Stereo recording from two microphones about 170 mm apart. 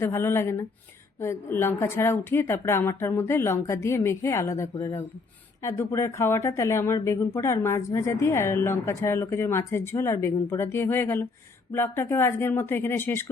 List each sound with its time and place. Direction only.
0.0 s a woman's voice: 15° left (ahead or behind)